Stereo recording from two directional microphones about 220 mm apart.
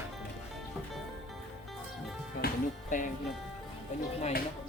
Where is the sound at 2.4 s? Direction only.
40° left (ahead or behind).